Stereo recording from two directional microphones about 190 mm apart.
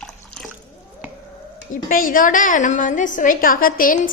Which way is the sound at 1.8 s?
45° left (ahead or behind).